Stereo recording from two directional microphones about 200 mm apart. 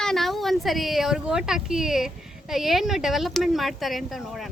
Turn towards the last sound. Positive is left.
turn(degrees=0)  # may be behind; listen again after turning